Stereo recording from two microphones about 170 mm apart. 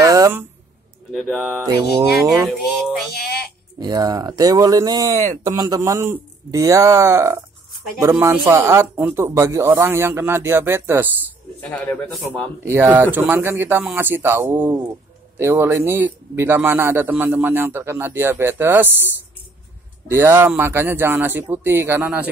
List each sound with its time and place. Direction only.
0.0 s a sound: 20° right (ahead or behind)
1.1 s speech: centre (ahead or behind)
3.1 s a sound: 70° left (ahead or behind)
3.8 s speech: 20° right (ahead or behind)
11.7 s speech: 10° left (ahead or behind)
12.6 s speech: 15° right (ahead or behind)
20.1 s speech: 15° right (ahead or behind)